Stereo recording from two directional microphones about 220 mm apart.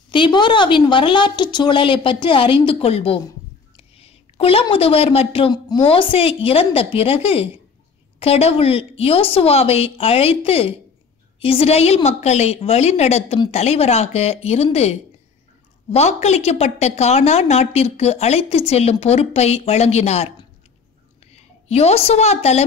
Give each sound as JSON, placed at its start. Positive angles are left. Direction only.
{"t": 0.1, "sound": "a woman's voice", "side_deg": 20}
{"t": 21.3, "sound": "a woman's voice", "side_deg": 30}